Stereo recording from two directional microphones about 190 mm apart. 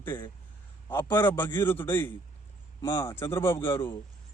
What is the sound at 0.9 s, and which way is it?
A man's voice, 10° left (ahead or behind).